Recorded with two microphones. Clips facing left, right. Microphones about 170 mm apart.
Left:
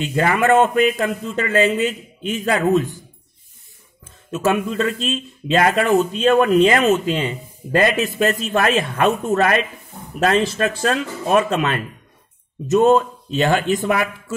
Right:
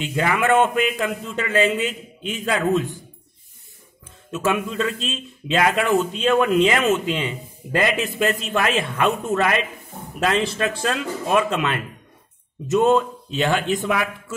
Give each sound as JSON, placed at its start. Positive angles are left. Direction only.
{"t": 0.0, "sound": "speech", "side_deg": 45}
{"t": 4.3, "sound": "speech", "side_deg": 40}